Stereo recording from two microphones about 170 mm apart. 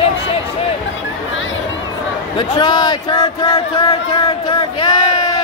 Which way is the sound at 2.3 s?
30° left (ahead or behind).